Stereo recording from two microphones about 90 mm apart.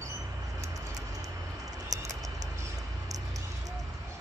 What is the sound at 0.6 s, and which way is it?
Vehicle, 40° right (ahead or behind).